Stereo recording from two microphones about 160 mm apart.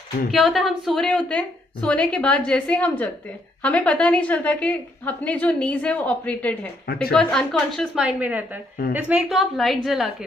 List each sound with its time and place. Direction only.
0.3 s a woman's voice: centre (ahead or behind)